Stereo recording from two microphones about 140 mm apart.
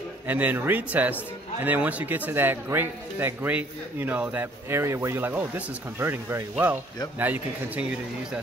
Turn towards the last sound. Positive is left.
turn(degrees=-10)  # may be behind; listen again after turning